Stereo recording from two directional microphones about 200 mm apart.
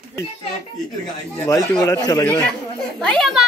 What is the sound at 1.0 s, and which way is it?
Speech, 15° left (ahead or behind).